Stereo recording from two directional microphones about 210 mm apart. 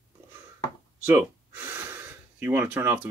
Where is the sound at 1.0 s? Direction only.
10° right (ahead or behind).